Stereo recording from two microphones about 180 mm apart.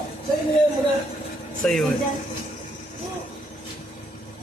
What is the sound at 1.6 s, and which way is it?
Speech, centre (ahead or behind).